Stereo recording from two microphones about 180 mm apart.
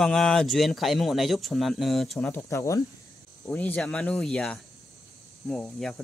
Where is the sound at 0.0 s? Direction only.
Centre (ahead or behind).